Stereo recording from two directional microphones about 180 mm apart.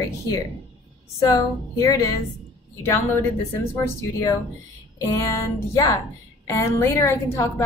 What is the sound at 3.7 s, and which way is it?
A woman's voice, 20° left (ahead or behind).